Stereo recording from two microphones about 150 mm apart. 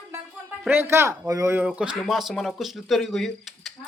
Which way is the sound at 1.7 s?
5° right (ahead or behind).